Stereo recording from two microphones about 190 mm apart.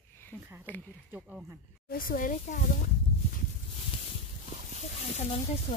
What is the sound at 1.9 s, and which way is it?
Speech, 50° left (ahead or behind).